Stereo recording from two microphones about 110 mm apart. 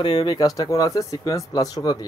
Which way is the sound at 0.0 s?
40° left (ahead or behind).